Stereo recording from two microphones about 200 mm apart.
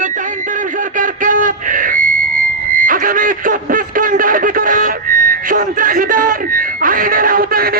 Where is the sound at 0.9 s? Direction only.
40° right (ahead or behind).